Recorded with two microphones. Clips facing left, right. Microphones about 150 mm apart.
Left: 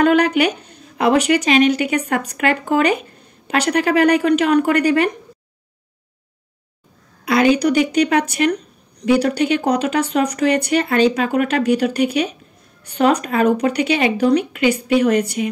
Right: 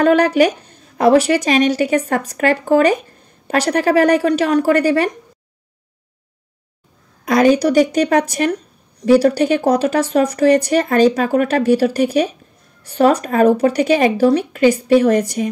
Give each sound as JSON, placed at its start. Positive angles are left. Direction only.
{"t": 0.0, "sound": "a sound", "side_deg": -35}
{"t": 0.9, "sound": "speech", "side_deg": -35}
{"t": 7.2, "sound": "speech", "side_deg": -40}